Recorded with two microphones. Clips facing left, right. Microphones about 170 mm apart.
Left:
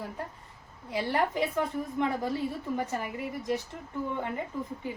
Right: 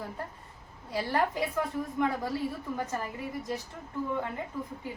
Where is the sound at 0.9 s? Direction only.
20° left (ahead or behind).